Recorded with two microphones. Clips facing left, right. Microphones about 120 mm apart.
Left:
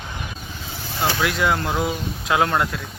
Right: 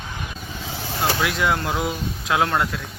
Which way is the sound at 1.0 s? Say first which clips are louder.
Left 1 dB; centre (ahead or behind).